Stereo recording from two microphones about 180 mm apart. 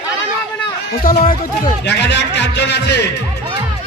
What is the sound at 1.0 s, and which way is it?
Speech, 50° left (ahead or behind).